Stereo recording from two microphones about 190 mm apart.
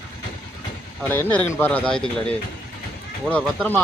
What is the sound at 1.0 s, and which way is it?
Speech, 10° left (ahead or behind).